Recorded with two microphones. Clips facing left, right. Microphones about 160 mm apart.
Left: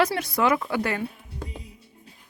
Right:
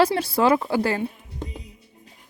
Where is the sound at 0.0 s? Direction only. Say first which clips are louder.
Right 4 dB; 30° right (ahead or behind).